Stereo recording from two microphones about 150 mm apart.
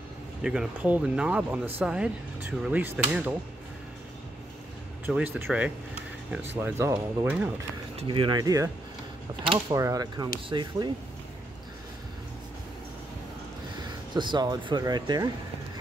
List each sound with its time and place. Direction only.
0.4 s speech: 5° right (ahead or behind)
5.0 s speech: 10° right (ahead or behind)
6.5 s speech: 15° right (ahead or behind)
7.9 s speech: 40° right (ahead or behind)
14.1 s speech: 30° right (ahead or behind)